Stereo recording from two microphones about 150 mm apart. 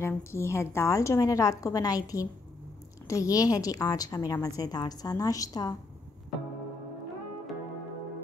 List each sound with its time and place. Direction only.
0.0 s a woman's voice: 15° left (ahead or behind)